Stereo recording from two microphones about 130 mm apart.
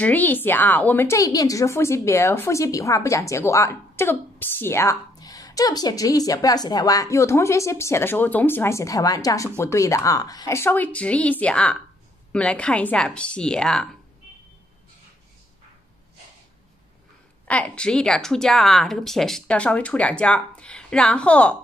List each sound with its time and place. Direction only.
0.0 s a woman's voice: 15° left (ahead or behind)
17.5 s a woman's voice: 10° left (ahead or behind)